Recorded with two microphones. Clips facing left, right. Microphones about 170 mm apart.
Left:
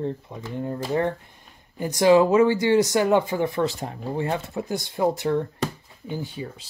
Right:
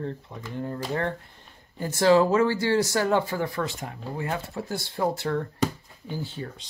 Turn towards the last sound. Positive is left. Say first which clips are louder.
# left 2 dB
turn(degrees=5)  # may be behind; listen again after turning